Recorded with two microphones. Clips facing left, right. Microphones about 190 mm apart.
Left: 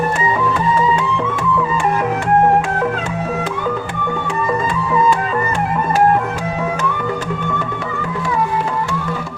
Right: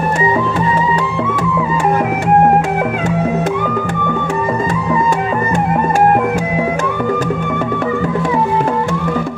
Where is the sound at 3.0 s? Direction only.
45° right (ahead or behind).